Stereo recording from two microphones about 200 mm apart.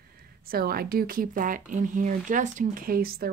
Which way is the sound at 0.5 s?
50° right (ahead or behind).